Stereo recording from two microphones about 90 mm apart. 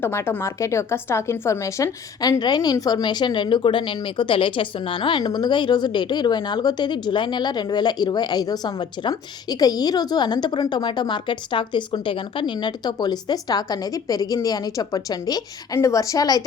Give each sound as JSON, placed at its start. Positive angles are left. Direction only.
{"t": 0.0, "sound": "speech", "side_deg": 25}
{"t": 2.4, "sound": "speech", "side_deg": 50}
{"t": 5.2, "sound": "speech", "side_deg": 50}